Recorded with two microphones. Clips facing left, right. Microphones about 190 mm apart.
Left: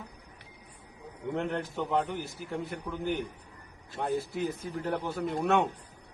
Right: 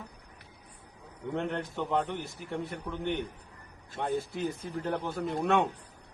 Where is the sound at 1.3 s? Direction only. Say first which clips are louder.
Left 1 dB; centre (ahead or behind).